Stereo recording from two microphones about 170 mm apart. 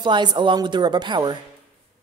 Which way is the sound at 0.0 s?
25° right (ahead or behind).